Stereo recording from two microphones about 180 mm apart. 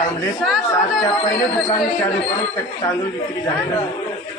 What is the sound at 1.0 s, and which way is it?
Speech, 20° left (ahead or behind).